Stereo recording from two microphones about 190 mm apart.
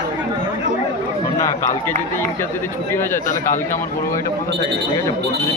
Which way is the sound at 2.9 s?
15° left (ahead or behind).